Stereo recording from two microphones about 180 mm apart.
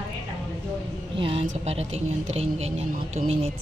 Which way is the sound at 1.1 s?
30° right (ahead or behind).